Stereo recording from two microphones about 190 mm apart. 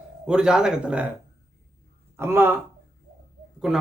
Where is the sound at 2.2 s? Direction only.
10° right (ahead or behind).